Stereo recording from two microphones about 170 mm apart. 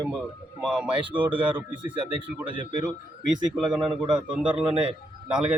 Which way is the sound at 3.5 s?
Centre (ahead or behind).